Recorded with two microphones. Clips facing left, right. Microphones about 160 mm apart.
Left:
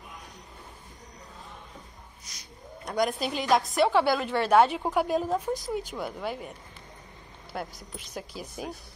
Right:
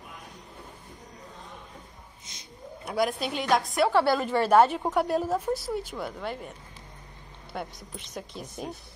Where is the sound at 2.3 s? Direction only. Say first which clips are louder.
Right 1 dB; 25° right (ahead or behind).